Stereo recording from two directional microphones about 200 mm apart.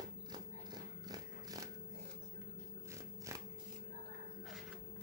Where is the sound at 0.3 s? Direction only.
20° right (ahead or behind).